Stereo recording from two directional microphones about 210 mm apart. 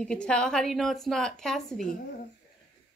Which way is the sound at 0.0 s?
5° left (ahead or behind).